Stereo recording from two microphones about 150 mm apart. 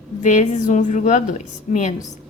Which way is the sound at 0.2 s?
55° left (ahead or behind).